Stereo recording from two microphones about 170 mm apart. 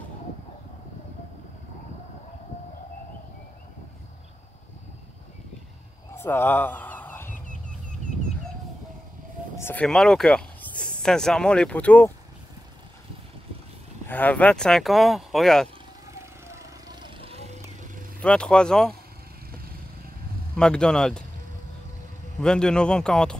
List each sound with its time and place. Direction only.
6.1 s fowl: 15° left (ahead or behind)
9.6 s speech: 15° left (ahead or behind)
9.8 s speech: centre (ahead or behind)
14.0 s speech: 10° left (ahead or behind)
16.1 s vehicle: 15° right (ahead or behind); by 17.5 s 35° right (ahead or behind)
18.2 s speech: 5° left (ahead or behind)
20.5 s speech: 5° left (ahead or behind)
22.4 s speech: 5° left (ahead or behind)